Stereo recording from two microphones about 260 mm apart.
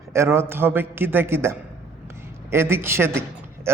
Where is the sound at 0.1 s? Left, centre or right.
Centre.